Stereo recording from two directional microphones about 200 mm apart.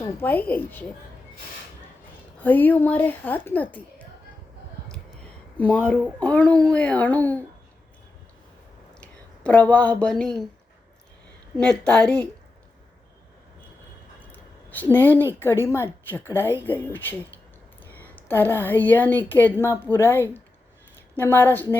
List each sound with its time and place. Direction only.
0.1 s a woman's voice: 10° left (ahead or behind)
2.4 s a woman's voice: 10° left (ahead or behind)
5.5 s a woman's voice: 5° left (ahead or behind)
9.0 s speech: 5° left (ahead or behind)
11.6 s a woman's voice: 5° left (ahead or behind)
14.3 s a sound: 10° left (ahead or behind)
14.9 s a woman's voice: 10° left (ahead or behind)